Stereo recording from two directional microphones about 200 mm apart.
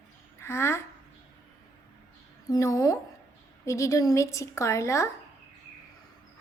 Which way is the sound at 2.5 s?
15° left (ahead or behind).